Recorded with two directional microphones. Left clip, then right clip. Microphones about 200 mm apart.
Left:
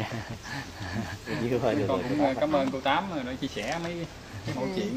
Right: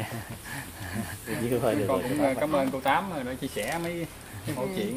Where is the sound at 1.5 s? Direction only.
20° right (ahead or behind).